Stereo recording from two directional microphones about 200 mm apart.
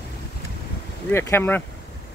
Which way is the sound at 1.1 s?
10° left (ahead or behind).